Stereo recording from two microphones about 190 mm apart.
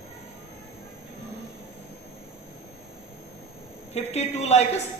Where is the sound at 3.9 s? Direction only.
35° left (ahead or behind).